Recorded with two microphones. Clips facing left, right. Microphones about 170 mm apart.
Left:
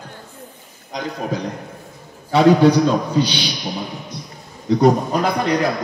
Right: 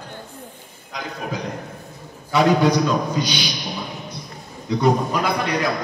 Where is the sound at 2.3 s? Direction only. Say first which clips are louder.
Left 4 dB; 30° left (ahead or behind).